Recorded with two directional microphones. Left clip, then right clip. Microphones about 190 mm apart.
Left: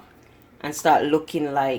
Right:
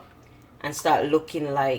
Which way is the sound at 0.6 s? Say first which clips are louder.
Left 3 dB; 45° left (ahead or behind).